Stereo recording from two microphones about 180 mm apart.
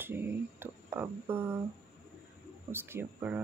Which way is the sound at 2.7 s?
15° right (ahead or behind).